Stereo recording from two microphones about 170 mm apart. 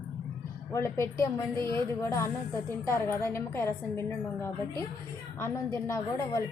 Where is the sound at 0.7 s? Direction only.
15° left (ahead or behind).